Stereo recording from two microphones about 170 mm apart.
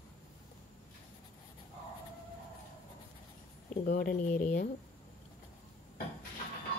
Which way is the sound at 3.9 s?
50° left (ahead or behind).